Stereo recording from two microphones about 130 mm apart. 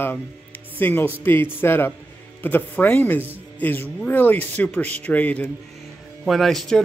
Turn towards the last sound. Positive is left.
turn(degrees=5)  # may be behind; listen again after turning